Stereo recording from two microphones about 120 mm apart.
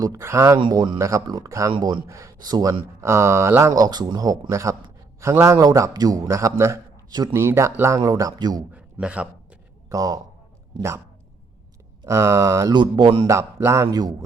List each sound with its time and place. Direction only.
0.0 s speech: 25° right (ahead or behind)
1.7 s speech: 40° right (ahead or behind)
3.0 s speech: 20° right (ahead or behind)
7.3 s speech: 25° right (ahead or behind)
8.7 s a sound: 10° right (ahead or behind)
9.9 s speech: 30° right (ahead or behind)
12.0 s speech: 25° right (ahead or behind)